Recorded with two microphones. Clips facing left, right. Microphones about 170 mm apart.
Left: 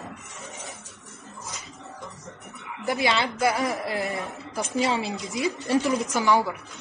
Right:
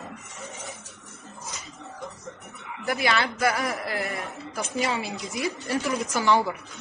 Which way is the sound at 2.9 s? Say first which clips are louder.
Left 1 dB; 20° left (ahead or behind).